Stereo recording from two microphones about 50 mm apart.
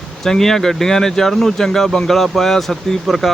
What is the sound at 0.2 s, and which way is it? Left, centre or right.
Speech, centre.